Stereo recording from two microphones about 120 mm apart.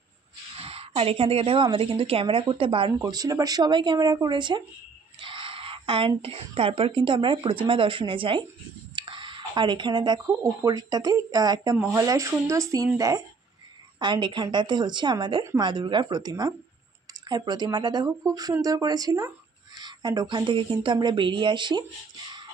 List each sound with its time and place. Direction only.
0.6 s a woman's voice: 55° right (ahead or behind)
3.0 s a woman's voice: 30° right (ahead or behind); by 8.5 s 45° right (ahead or behind)
8.9 s dishes: 45° right (ahead or behind)
10.3 s a woman's voice: 30° right (ahead or behind)
13.9 s a woman's voice: 40° right (ahead or behind)